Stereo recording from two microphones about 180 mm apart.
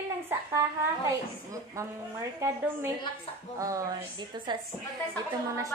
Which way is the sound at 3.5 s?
20° right (ahead or behind).